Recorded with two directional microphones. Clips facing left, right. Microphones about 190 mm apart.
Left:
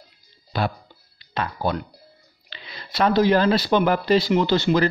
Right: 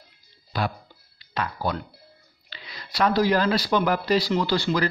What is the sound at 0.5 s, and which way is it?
Speech, 25° left (ahead or behind).